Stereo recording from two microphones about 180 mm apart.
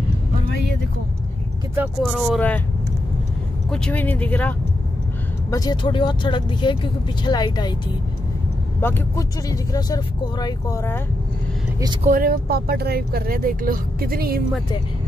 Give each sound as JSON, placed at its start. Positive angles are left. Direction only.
{"t": 1.8, "sound": "speech", "side_deg": 0}
{"t": 3.7, "sound": "speech", "side_deg": 5}
{"t": 5.5, "sound": "speech", "side_deg": 20}
{"t": 8.8, "sound": "speech", "side_deg": 15}
{"t": 12.0, "sound": "speech", "side_deg": -50}